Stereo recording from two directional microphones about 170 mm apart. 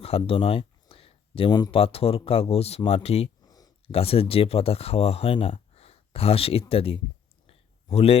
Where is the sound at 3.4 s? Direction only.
20° left (ahead or behind).